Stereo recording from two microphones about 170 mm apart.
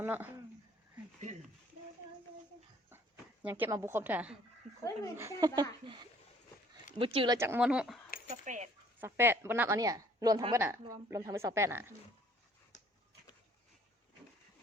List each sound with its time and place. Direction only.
0.0 s speech: 10° right (ahead or behind)
3.4 s a woman's voice: 15° right (ahead or behind)
4.8 s speech: 20° left (ahead or behind)
5.1 s a woman's voice: 15° right (ahead or behind)
7.0 s speech: 30° right (ahead or behind)
7.3 s a woman's voice: 15° right (ahead or behind)
7.6 s speech: 5° right (ahead or behind)
8.3 s a sound: 45° right (ahead or behind)
9.0 s a woman's voice: 15° right (ahead or behind)
12.7 s a sound: 45° left (ahead or behind)